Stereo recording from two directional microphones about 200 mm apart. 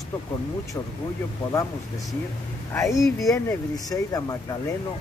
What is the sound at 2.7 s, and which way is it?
Speech, 15° left (ahead or behind).